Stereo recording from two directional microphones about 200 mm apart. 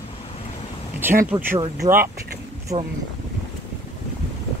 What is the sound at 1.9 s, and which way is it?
Speech, 45° right (ahead or behind).